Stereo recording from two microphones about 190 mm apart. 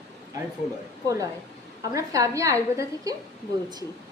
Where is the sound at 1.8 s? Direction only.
15° right (ahead or behind).